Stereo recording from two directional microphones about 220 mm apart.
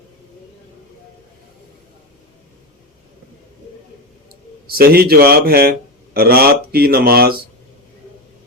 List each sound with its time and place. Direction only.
4.6 s speech: 45° right (ahead or behind)